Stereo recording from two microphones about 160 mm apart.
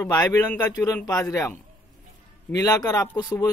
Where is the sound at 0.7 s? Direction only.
20° left (ahead or behind).